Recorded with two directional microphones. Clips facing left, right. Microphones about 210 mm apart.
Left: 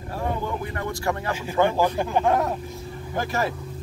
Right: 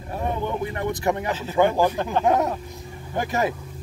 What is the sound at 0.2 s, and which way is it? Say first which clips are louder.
Speech: right 2 dB; 20° right (ahead or behind).